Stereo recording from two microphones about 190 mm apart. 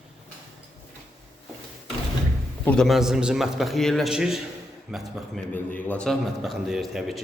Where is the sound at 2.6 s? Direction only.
Centre (ahead or behind).